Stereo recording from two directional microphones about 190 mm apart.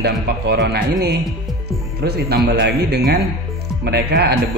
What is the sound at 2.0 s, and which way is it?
A man's voice, 55° right (ahead or behind).